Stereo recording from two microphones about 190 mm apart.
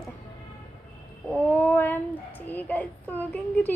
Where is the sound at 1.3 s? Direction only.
10° left (ahead or behind).